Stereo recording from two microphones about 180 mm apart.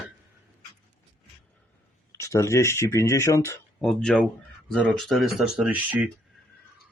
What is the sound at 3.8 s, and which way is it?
Speech, centre (ahead or behind).